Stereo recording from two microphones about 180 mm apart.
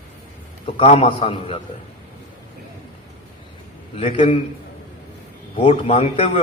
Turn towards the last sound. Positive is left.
turn(degrees=30)  # may be behind; listen again after turning